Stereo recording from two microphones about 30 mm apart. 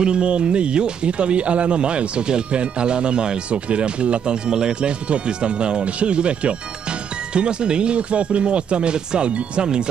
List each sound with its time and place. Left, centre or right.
0.0 s speech: right
4.5 s speech: right